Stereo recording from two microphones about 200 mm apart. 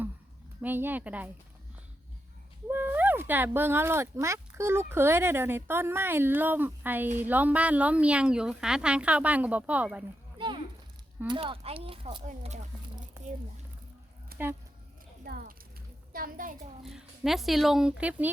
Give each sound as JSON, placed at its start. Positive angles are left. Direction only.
{"t": 0.6, "sound": "speech", "side_deg": -10}
{"t": 2.6, "sound": "speech", "side_deg": -10}
{"t": 10.3, "sound": "a sound", "side_deg": -25}
{"t": 11.3, "sound": "speech", "side_deg": -25}
{"t": 14.3, "sound": "a sound", "side_deg": -50}
{"t": 15.2, "sound": "a woman's voice", "side_deg": -50}
{"t": 16.8, "sound": "speech", "side_deg": 0}